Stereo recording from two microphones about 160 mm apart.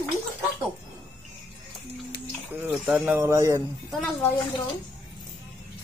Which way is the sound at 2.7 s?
5° right (ahead or behind).